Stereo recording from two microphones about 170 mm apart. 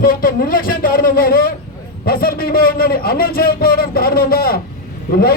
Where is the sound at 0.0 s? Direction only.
60° left (ahead or behind).